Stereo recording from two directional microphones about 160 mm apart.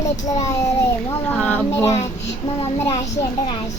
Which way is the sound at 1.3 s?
10° left (ahead or behind).